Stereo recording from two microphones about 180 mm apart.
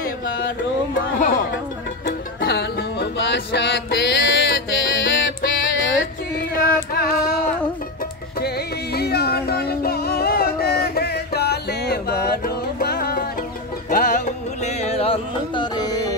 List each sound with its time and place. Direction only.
1.1 s speech: 50° left (ahead or behind)
2.0 s music: 65° left (ahead or behind); by 5.2 s 90° left
6.5 s female singing: 55° left (ahead or behind)
8.9 s music: 60° left (ahead or behind)
13.8 s music: 50° left (ahead or behind); by 16.2 s 20° left (ahead or behind)